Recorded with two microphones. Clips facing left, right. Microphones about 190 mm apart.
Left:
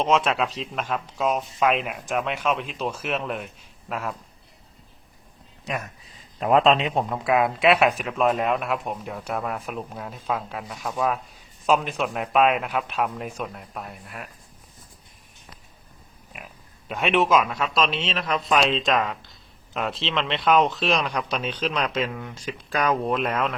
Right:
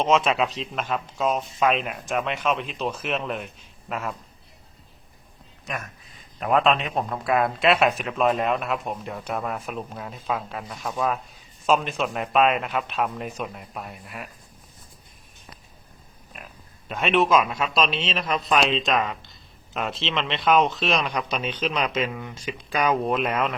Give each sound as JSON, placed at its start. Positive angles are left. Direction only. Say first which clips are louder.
{"t": 0.0, "sound": "speech", "louder": "right 1 dB", "side_deg": -5}
{"t": 6.4, "sound": "a man's voice", "louder": "left 2 dB", "side_deg": 25}
{"t": 7.0, "sound": "speech", "louder": "left 1 dB", "side_deg": 5}
{"t": 16.9, "sound": "speech", "louder": "even", "side_deg": 0}
{"t": 17.4, "sound": "speech", "louder": "even", "side_deg": -10}